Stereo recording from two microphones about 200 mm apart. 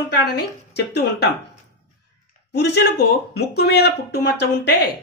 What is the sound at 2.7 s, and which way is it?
Speech, 55° left (ahead or behind).